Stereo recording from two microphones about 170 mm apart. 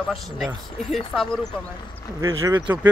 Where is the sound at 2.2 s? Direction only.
20° right (ahead or behind).